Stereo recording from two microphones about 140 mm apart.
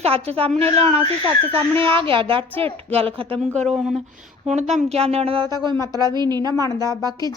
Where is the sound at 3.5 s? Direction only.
5° left (ahead or behind).